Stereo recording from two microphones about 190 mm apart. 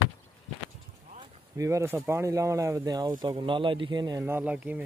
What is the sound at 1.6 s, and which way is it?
Speech, 15° right (ahead or behind).